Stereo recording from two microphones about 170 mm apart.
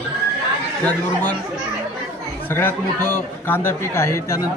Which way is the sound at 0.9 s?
10° left (ahead or behind).